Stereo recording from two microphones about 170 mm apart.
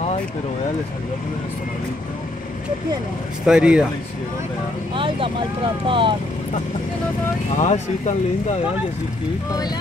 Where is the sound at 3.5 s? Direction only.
5° right (ahead or behind).